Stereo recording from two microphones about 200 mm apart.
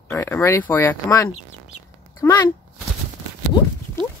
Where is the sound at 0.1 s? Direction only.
15° left (ahead or behind).